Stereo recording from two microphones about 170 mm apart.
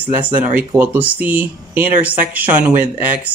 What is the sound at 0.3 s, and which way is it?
Speech, 10° right (ahead or behind).